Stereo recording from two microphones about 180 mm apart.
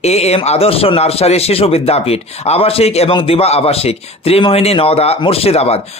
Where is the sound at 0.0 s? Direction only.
35° left (ahead or behind).